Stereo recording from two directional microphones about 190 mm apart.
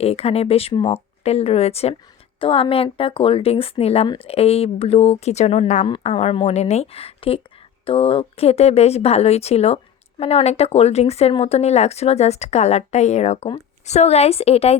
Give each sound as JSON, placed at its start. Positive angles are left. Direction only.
{"t": 0.0, "sound": "speech", "side_deg": 30}